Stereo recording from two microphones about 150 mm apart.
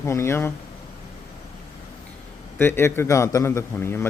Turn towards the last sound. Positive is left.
turn(degrees=15)  # may be behind; listen again after turning